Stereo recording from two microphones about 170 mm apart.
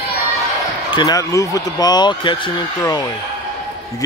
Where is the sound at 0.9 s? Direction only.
20° left (ahead or behind).